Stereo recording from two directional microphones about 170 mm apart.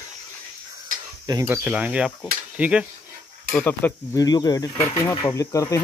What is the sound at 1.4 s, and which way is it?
Speech, 10° right (ahead or behind).